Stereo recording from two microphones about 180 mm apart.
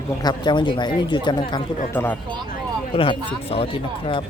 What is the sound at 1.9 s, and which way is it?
Speech, 10° left (ahead or behind).